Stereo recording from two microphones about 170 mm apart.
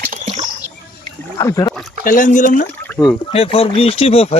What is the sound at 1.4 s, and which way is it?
Speech, 20° left (ahead or behind).